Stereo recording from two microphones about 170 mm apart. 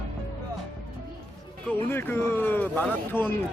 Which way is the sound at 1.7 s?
15° left (ahead or behind).